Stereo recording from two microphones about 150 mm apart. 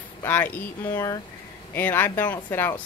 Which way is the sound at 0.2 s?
10° left (ahead or behind).